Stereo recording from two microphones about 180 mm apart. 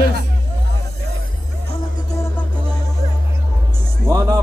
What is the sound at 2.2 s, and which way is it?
Music, 15° left (ahead or behind).